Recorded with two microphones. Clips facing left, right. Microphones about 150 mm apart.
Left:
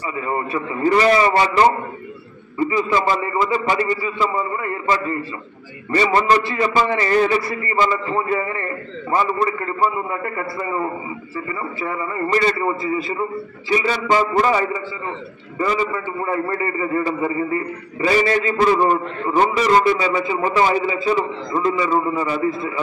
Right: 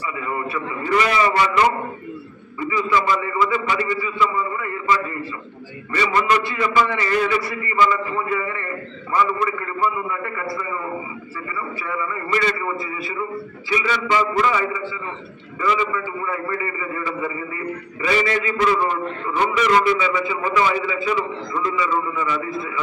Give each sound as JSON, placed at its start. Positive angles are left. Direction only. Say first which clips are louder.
{"t": 0.3, "sound": "a man's voice", "louder": "left 3 dB", "side_deg": 35}
{"t": 2.7, "sound": "a man's voice", "louder": "even", "side_deg": 35}